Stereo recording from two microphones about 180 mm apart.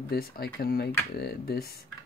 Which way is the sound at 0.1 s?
60° left (ahead or behind).